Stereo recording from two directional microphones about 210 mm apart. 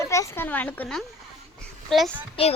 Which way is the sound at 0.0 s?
15° left (ahead or behind).